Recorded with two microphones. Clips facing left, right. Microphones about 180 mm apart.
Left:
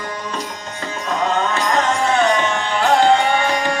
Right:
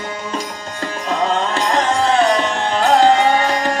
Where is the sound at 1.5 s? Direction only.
30° right (ahead or behind).